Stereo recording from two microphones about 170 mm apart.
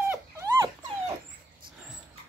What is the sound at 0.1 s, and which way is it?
Dog, 15° right (ahead or behind).